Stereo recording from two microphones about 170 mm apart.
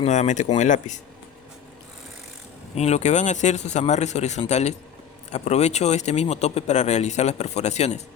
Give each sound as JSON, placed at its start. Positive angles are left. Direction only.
{"t": 0.0, "sound": "speech", "side_deg": 45}
{"t": 2.7, "sound": "speech", "side_deg": 40}